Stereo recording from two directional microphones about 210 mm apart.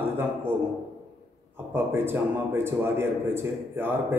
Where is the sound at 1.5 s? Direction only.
10° right (ahead or behind).